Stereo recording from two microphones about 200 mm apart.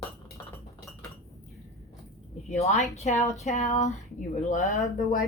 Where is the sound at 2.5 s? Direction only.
35° left (ahead or behind).